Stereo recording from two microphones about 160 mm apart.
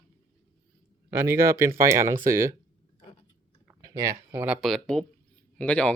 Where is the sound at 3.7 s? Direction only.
20° right (ahead or behind).